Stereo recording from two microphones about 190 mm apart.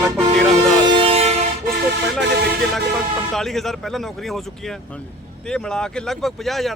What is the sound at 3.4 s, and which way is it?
Speech, centre (ahead or behind).